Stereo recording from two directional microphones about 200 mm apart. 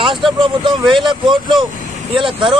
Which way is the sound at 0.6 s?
25° right (ahead or behind).